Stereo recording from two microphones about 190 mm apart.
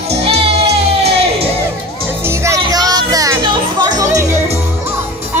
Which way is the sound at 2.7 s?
20° right (ahead or behind).